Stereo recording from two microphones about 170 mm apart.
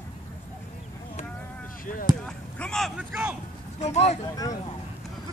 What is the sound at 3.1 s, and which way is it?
Speech, 10° right (ahead or behind).